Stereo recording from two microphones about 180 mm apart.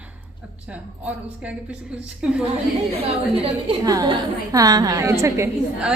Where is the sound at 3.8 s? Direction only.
20° right (ahead or behind).